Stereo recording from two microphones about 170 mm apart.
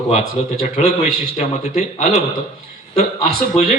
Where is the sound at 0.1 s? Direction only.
40° left (ahead or behind).